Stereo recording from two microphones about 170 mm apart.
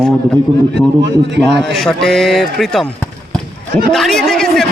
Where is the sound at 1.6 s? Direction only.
5° left (ahead or behind).